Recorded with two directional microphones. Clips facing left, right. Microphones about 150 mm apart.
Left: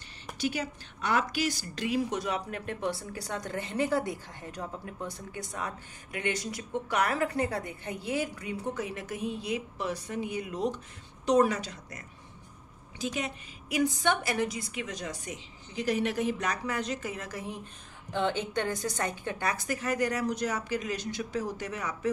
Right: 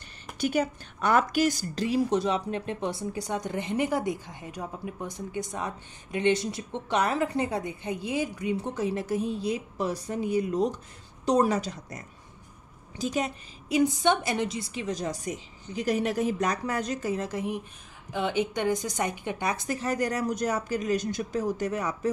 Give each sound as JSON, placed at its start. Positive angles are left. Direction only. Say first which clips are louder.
{"t": 0.4, "sound": "a woman's voice", "louder": "right 6 dB", "side_deg": -50}
{"t": 8.7, "sound": "speech", "louder": "right 7 dB", "side_deg": -30}
{"t": 13.7, "sound": "speech", "louder": "right 4 dB", "side_deg": -25}
{"t": 17.3, "sound": "a woman's voice", "louder": "right 7 dB", "side_deg": -20}